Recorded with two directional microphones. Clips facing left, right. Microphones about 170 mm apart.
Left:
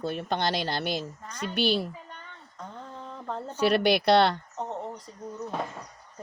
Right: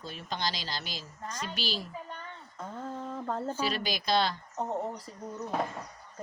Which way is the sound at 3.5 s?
65° left (ahead or behind).